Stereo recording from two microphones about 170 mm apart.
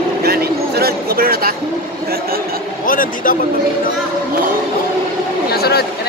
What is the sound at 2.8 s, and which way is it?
Speech, 55° left (ahead or behind).